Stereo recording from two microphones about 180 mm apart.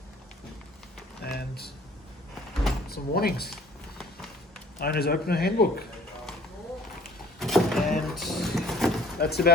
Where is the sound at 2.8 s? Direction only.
60° left (ahead or behind).